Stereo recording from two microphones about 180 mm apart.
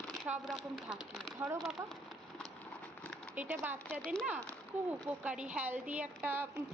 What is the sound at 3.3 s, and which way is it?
A woman's voice, 10° right (ahead or behind).